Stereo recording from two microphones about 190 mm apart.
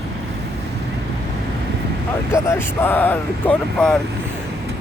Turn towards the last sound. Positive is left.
turn(degrees=5)  # may be behind; listen again after turning